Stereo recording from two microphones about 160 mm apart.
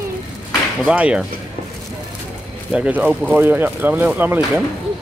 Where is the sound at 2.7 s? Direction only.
10° right (ahead or behind).